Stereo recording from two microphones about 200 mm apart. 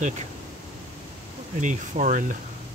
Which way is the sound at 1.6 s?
40° right (ahead or behind).